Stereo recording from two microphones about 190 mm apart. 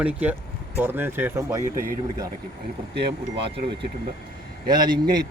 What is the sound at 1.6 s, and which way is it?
Speech, 45° right (ahead or behind).